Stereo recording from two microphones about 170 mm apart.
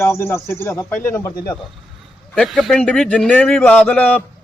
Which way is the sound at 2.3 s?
Centre (ahead or behind).